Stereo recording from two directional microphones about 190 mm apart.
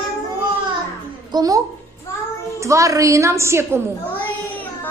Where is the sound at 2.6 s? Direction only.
15° right (ahead or behind).